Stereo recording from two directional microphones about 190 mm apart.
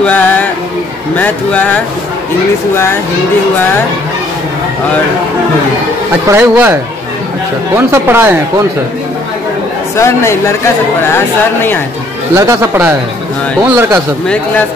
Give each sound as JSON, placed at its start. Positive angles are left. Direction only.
{"t": 0.0, "sound": "music", "side_deg": 10}
{"t": 1.1, "sound": "speech", "side_deg": 10}
{"t": 6.2, "sound": "speech", "side_deg": -10}
{"t": 9.9, "sound": "speech", "side_deg": 15}
{"t": 12.4, "sound": "speech", "side_deg": -15}